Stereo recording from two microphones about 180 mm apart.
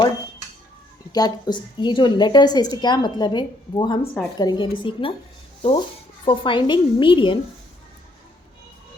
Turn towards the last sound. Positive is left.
turn(degrees=25)  # may be behind; listen again after turning